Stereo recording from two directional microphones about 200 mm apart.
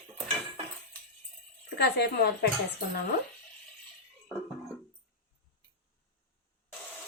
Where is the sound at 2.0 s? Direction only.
55° left (ahead or behind).